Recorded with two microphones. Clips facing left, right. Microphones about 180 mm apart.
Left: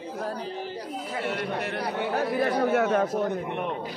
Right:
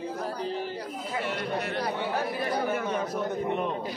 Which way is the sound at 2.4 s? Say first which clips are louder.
Left 5 dB; 75° left (ahead or behind).